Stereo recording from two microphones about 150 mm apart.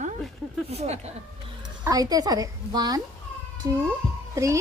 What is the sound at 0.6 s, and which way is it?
Speech, 45° right (ahead or behind).